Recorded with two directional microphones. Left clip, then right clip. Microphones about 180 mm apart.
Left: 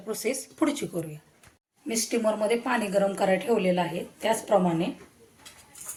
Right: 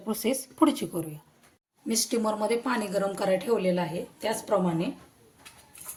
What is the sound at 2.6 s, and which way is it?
A woman's voice, 65° right (ahead or behind).